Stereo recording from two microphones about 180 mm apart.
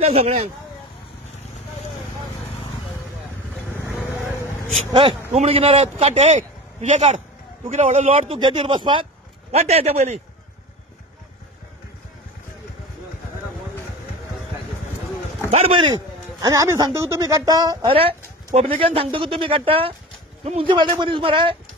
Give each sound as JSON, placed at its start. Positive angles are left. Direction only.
{"t": 0.0, "sound": "speech", "side_deg": -35}
{"t": 5.3, "sound": "speech", "side_deg": -35}
{"t": 8.4, "sound": "speech", "side_deg": -25}
{"t": 15.5, "sound": "speech", "side_deg": -35}
{"t": 16.3, "sound": "speech", "side_deg": -20}
{"t": 17.9, "sound": "speech", "side_deg": -35}